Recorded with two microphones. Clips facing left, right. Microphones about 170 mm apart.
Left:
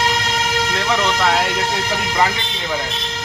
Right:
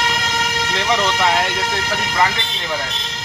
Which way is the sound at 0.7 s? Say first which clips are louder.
Right 2 dB; centre (ahead or behind).